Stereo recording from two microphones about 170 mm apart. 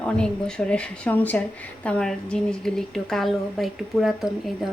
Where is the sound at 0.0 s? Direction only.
5° left (ahead or behind).